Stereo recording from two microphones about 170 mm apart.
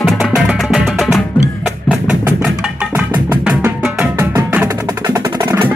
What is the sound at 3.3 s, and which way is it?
Music, 10° right (ahead or behind).